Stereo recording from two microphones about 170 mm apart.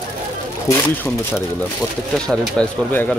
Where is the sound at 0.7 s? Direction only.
15° left (ahead or behind).